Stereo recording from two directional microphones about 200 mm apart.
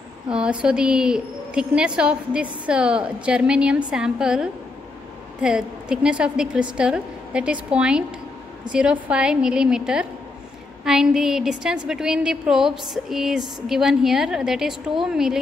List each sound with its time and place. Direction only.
0.3 s a woman's voice: 5° right (ahead or behind)